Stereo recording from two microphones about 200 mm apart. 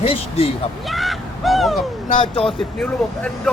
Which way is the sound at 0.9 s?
Centre (ahead or behind).